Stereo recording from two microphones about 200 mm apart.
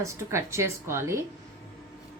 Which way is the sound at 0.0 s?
15° right (ahead or behind).